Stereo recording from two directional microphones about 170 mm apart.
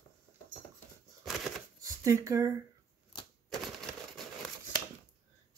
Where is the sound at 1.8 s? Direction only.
20° right (ahead or behind).